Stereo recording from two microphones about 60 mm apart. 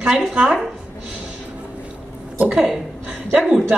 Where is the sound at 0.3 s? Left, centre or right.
Centre.